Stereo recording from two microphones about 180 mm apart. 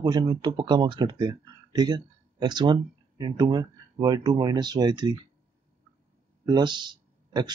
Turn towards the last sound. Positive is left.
turn(degrees=-25)  # may be behind; listen again after turning